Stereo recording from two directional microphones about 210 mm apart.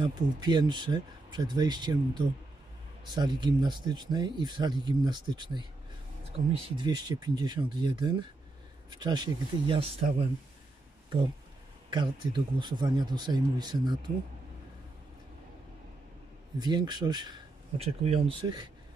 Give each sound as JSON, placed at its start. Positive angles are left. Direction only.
{"t": 0.0, "sound": "speech", "side_deg": -20}
{"t": 6.8, "sound": "speech", "side_deg": -20}
{"t": 11.9, "sound": "speech", "side_deg": -20}
{"t": 16.5, "sound": "speech", "side_deg": -20}